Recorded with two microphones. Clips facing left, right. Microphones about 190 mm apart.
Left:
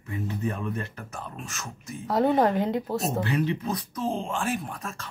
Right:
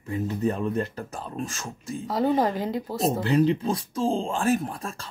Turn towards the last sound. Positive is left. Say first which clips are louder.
# right 3 dB
turn(degrees=-30)  # may be behind; listen again after turning